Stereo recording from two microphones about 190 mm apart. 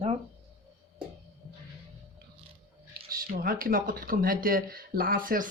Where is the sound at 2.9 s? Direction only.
50° right (ahead or behind).